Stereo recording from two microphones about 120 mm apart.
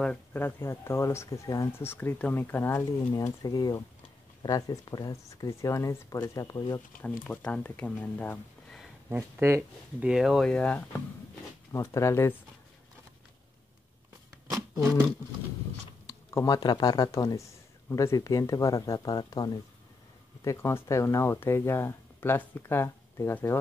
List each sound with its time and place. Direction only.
0.0 s speech: 10° left (ahead or behind)
2.7 s speech: 30° left (ahead or behind)
7.0 s speech: 10° left (ahead or behind)
9.1 s speech: 20° right (ahead or behind); by 10.8 s 10° left (ahead or behind)
11.7 s speech: 25° left (ahead or behind)
16.1 s computer keyboard: 25° left (ahead or behind)
16.5 s speech: 35° left (ahead or behind)
20.4 s speech: 25° left (ahead or behind)